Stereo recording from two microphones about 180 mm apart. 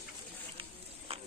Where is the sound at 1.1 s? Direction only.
35° right (ahead or behind).